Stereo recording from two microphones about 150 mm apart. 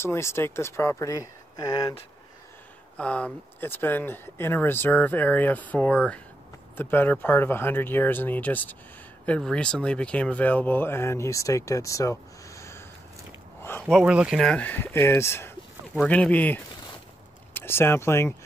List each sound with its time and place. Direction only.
0.0 s speech: 15° left (ahead or behind)
3.0 s speech: 10° left (ahead or behind)
13.6 s a sound: 15° left (ahead or behind)
13.8 s speech: 5° right (ahead or behind); by 18.3 s 15° left (ahead or behind)